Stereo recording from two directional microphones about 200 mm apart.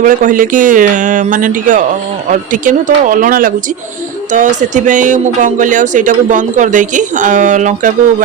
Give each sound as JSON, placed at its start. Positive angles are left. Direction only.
{"t": 0.0, "sound": "speech", "side_deg": -40}